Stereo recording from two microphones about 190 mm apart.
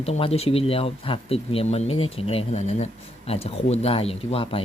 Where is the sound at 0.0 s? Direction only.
30° left (ahead or behind).